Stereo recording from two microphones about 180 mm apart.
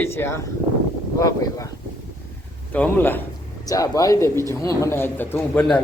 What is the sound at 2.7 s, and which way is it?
Speech, 10° left (ahead or behind).